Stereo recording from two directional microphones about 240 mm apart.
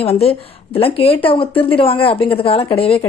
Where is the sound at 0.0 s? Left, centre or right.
Left.